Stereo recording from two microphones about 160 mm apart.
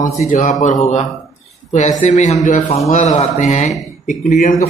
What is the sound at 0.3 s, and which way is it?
Speech, 45° left (ahead or behind).